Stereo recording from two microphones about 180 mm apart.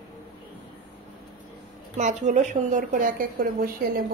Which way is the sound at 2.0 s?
40° right (ahead or behind).